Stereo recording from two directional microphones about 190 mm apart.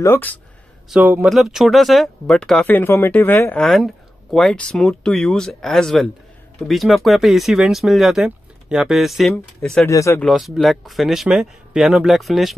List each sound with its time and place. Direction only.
0.0 s speech: 10° left (ahead or behind)
0.8 s speech: 5° right (ahead or behind)
9.8 s speech: 15° left (ahead or behind)
10.2 s speech: centre (ahead or behind)